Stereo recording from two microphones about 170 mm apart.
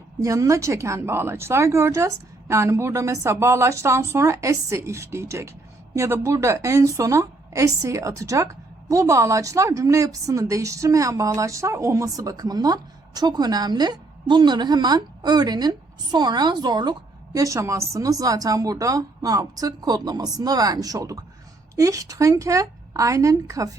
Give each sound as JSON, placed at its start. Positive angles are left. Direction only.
{"t": 0.2, "sound": "a woman's voice", "side_deg": -20}